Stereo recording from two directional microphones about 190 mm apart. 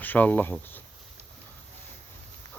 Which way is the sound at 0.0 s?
10° left (ahead or behind).